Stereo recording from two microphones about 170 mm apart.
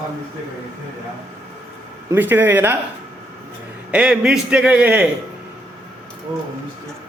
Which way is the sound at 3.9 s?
5° right (ahead or behind).